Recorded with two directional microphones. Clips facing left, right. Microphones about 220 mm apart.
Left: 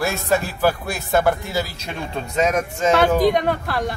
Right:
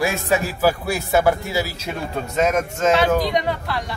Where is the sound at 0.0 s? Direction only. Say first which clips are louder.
Even; 10° right (ahead or behind).